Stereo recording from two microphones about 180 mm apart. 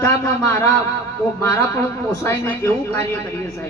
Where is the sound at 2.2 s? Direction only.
10° left (ahead or behind).